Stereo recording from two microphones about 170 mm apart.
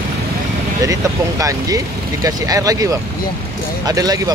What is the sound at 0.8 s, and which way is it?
Speech, 20° right (ahead or behind).